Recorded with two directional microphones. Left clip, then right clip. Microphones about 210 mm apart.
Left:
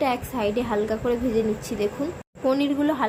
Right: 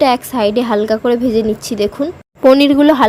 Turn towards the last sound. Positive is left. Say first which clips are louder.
# right 14 dB
turn(degrees=-50)  # may be behind; listen again after turning